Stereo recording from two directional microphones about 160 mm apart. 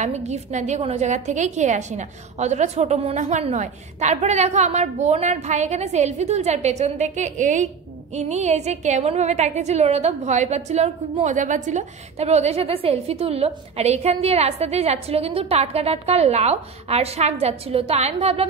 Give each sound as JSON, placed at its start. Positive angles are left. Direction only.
{"t": 0.0, "sound": "a woman's voice", "side_deg": -45}